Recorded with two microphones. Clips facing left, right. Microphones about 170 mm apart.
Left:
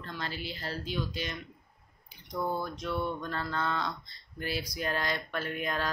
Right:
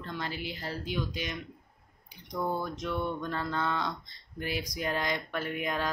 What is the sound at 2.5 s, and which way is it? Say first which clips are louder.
Speech: right 1 dB; 15° right (ahead or behind).